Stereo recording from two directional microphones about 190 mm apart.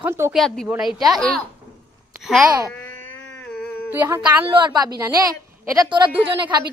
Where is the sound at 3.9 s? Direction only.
10° right (ahead or behind).